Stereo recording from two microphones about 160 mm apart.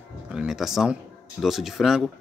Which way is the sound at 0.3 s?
5° right (ahead or behind).